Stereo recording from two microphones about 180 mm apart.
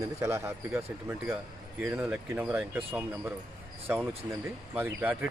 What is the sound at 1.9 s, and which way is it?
Speech, 10° right (ahead or behind).